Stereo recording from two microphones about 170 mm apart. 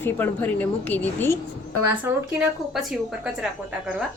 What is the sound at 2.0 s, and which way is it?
A woman's voice, 5° right (ahead or behind).